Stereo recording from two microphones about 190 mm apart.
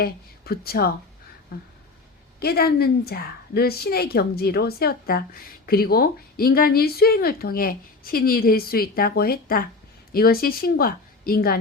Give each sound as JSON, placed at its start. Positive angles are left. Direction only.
{"t": 0.0, "sound": "a woman's voice", "side_deg": 55}
{"t": 1.5, "sound": "a sound", "side_deg": 55}
{"t": 2.4, "sound": "a woman's voice", "side_deg": 55}